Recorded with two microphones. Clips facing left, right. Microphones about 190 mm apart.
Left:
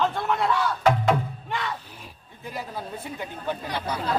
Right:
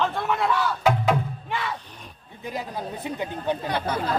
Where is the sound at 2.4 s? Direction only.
20° right (ahead or behind).